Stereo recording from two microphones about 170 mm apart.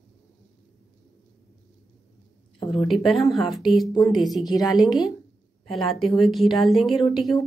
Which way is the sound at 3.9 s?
20° left (ahead or behind).